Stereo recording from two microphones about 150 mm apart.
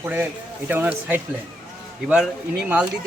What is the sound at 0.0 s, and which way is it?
Speech, 10° right (ahead or behind).